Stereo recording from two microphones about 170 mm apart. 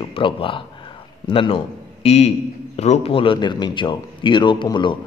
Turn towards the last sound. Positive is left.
turn(degrees=30)  # may be behind; listen again after turning